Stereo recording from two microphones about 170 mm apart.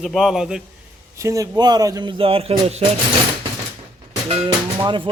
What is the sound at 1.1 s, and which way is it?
A man's voice, 20° right (ahead or behind).